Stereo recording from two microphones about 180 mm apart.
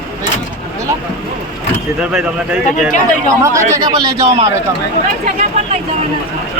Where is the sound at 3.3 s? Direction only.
15° right (ahead or behind).